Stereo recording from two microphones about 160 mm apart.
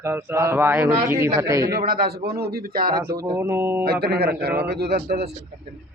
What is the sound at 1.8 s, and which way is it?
Speech, 70° right (ahead or behind).